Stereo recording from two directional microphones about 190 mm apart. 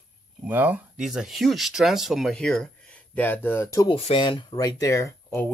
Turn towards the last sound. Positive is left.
turn(degrees=15)  # may be behind; listen again after turning